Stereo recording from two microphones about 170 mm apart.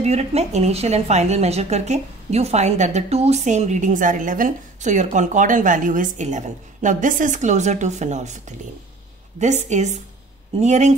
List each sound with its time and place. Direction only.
0.0 s a woman's voice: 40° right (ahead or behind)